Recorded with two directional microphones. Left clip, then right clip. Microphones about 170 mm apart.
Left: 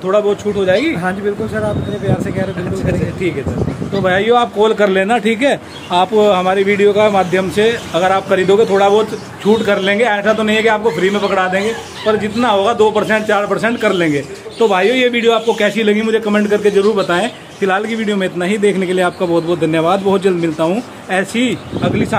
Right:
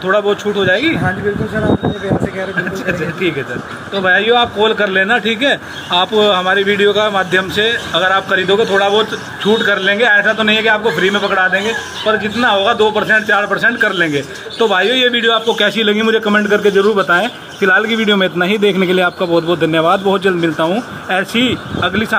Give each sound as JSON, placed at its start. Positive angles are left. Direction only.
{"t": 0.1, "sound": "speech", "side_deg": 15}
{"t": 4.0, "sound": "speech", "side_deg": 25}
{"t": 8.5, "sound": "a man's voice", "side_deg": 30}
{"t": 9.7, "sound": "a man's voice", "side_deg": 20}
{"t": 18.9, "sound": "a man's voice", "side_deg": 0}